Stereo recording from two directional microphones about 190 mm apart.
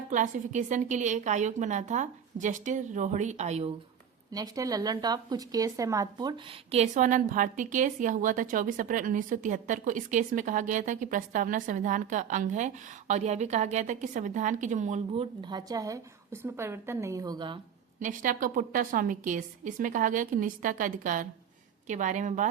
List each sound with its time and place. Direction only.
0.1 s speech: 40° right (ahead or behind)
4.3 s speech: 20° right (ahead or behind)
18.0 s a woman's voice: 45° right (ahead or behind)